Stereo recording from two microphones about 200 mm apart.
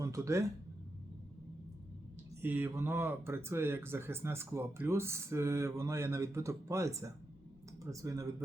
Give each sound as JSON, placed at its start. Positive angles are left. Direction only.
{"t": 0.0, "sound": "speech", "side_deg": -15}
{"t": 2.4, "sound": "speech", "side_deg": -10}